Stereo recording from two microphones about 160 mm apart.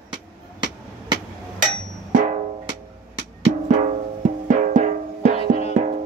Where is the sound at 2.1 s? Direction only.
55° right (ahead or behind).